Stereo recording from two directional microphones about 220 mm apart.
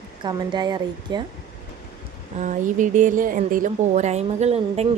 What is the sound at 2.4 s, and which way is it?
A woman's voice, 35° right (ahead or behind).